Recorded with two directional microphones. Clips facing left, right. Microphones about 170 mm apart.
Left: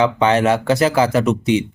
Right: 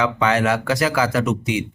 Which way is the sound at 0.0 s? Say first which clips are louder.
Left 4 dB; 25° left (ahead or behind).